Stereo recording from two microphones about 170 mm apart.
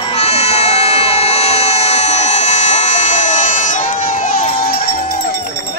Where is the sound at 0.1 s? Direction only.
35° left (ahead or behind).